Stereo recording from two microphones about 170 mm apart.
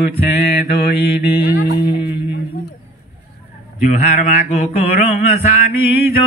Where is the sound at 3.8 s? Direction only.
40° left (ahead or behind).